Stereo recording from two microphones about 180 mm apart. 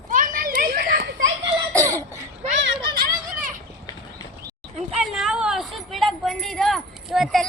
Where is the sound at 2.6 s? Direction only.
60° right (ahead or behind).